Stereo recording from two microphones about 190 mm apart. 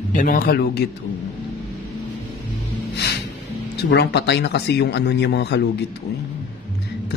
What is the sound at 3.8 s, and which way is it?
Speech, 60° left (ahead or behind).